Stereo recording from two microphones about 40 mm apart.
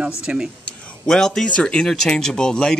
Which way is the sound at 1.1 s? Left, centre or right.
Centre.